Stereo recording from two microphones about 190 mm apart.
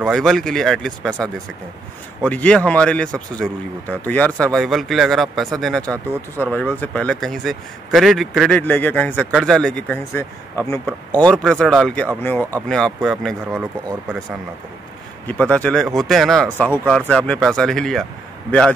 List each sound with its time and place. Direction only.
0.0 s speech: centre (ahead or behind)
2.2 s speech: 5° left (ahead or behind)
15.2 s speech: 5° left (ahead or behind)